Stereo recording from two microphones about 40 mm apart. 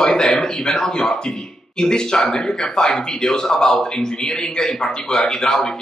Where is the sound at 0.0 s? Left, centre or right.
Centre.